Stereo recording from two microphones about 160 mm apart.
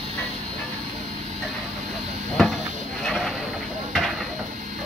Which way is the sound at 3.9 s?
Centre (ahead or behind).